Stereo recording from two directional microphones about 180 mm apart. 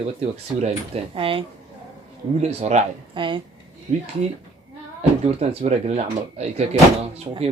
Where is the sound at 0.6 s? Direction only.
30° right (ahead or behind).